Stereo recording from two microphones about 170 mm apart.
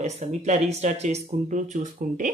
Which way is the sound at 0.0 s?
40° right (ahead or behind).